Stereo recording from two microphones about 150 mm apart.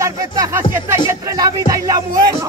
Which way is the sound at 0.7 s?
15° right (ahead or behind).